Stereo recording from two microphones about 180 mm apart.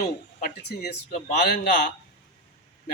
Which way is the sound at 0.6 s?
70° left (ahead or behind).